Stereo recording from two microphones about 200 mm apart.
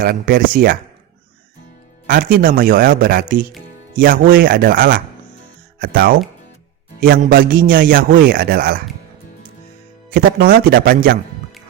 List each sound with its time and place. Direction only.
0.0 s speech: 50° right (ahead or behind)
2.0 s speech: 45° right (ahead or behind)
10.1 s speech: 50° right (ahead or behind)